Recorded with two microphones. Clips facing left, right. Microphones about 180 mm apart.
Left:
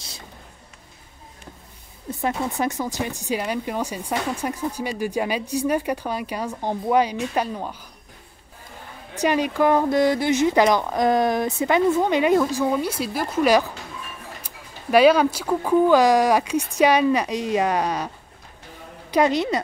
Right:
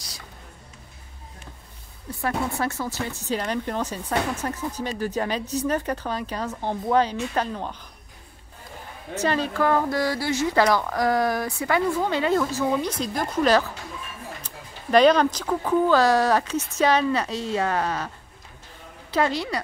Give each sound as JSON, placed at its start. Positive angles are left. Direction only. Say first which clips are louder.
{"t": 2.0, "sound": "speech", "louder": "left 2 dB", "side_deg": 20}
{"t": 9.1, "sound": "a woman's voice", "louder": "left 3 dB", "side_deg": 15}